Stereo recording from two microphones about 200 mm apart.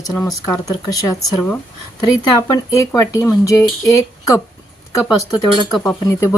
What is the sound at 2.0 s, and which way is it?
Speech, 20° left (ahead or behind).